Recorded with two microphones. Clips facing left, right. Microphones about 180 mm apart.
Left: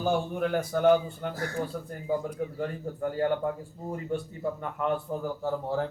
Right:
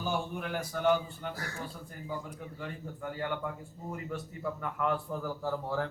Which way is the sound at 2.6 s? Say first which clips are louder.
Left 9 dB; 45° left (ahead or behind).